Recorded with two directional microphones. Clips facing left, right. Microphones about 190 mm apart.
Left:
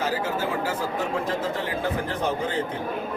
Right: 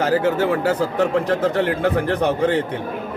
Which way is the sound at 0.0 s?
70° right (ahead or behind).